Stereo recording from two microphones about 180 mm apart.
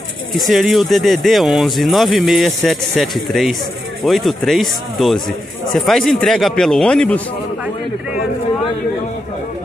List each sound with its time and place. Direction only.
0.3 s speech: centre (ahead or behind)